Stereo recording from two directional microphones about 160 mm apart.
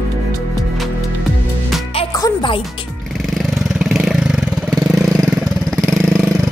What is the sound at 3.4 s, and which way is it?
Vehicle, 5° right (ahead or behind).